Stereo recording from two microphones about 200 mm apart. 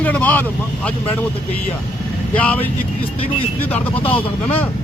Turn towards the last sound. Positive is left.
turn(degrees=25)  # may be behind; listen again after turning